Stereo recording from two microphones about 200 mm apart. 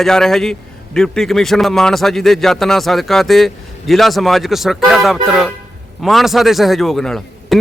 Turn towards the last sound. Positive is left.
turn(degrees=0)  # may be behind; listen again after turning